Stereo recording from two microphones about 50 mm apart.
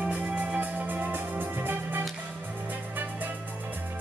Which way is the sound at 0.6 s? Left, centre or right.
Right.